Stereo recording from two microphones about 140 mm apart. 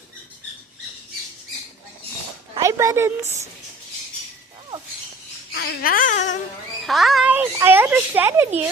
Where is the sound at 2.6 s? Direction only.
20° right (ahead or behind).